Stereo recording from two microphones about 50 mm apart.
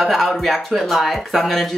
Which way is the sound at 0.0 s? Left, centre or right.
Centre.